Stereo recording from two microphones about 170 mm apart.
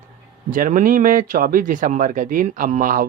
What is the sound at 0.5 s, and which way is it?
Speech, 50° right (ahead or behind).